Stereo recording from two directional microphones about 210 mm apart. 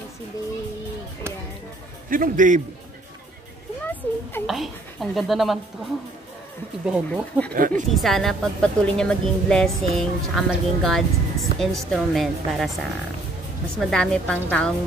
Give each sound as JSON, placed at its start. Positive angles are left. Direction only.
{"t": 2.0, "sound": "a man's voice", "side_deg": -40}
{"t": 3.8, "sound": "a sound", "side_deg": 10}
{"t": 4.5, "sound": "speech", "side_deg": 0}
{"t": 6.9, "sound": "speech", "side_deg": 5}
{"t": 7.5, "sound": "a man's voice", "side_deg": -40}
{"t": 7.9, "sound": "speech", "side_deg": 0}
{"t": 13.7, "sound": "speech", "side_deg": 0}